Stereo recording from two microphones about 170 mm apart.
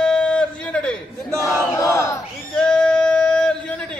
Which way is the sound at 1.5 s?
20° left (ahead or behind).